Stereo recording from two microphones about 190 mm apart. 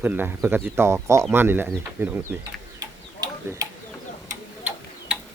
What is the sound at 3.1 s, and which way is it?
Tick-tock, 15° right (ahead or behind).